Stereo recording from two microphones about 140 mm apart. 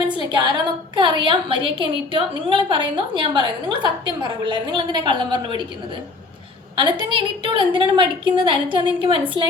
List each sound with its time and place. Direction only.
0.2 s a woman's voice: 30° right (ahead or behind)
7.1 s a woman's voice: 35° right (ahead or behind)